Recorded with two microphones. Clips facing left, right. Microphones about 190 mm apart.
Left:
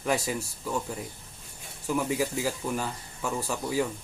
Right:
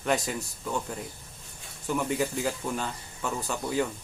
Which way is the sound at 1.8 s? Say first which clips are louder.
Even; 5° left (ahead or behind).